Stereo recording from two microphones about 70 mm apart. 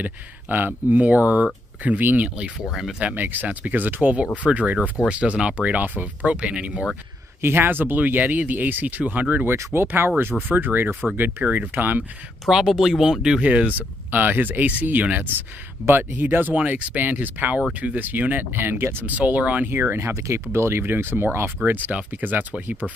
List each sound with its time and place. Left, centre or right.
0.0 s speech: right; by 3.0 s centre
3.0 s speech: right
7.4 s speech: right
12.4 s speech: centre
13.4 s speech: centre
19.7 s speech: right